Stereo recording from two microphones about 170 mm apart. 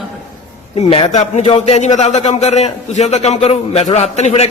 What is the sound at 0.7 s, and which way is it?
A man's voice, 35° left (ahead or behind).